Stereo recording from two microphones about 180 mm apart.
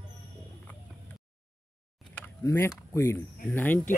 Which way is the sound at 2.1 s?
15° left (ahead or behind).